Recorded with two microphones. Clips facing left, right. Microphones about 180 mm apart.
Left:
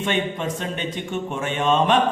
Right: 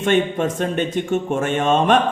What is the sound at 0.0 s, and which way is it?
Mantra, 50° right (ahead or behind).